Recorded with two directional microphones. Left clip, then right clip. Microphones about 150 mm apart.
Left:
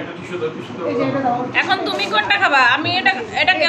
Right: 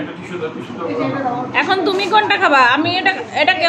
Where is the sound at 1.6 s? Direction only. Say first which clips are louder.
Right 5 dB; 55° right (ahead or behind).